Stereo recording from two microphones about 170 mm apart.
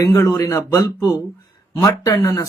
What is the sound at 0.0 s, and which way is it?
Speech, 20° left (ahead or behind).